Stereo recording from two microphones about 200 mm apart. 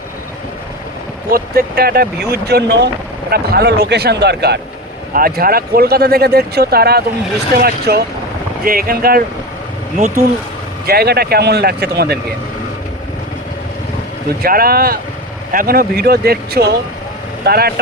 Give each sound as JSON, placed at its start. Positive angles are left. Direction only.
{"t": 1.3, "sound": "speech", "side_deg": -50}
{"t": 10.8, "sound": "speech", "side_deg": -50}
{"t": 14.4, "sound": "speech", "side_deg": -50}